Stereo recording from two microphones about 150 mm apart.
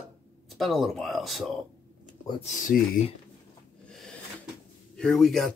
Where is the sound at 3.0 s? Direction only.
55° left (ahead or behind).